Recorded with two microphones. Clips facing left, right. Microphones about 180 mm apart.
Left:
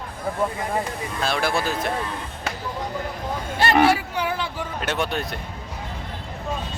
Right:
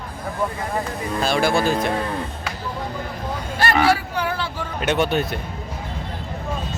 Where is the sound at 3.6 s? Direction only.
20° left (ahead or behind).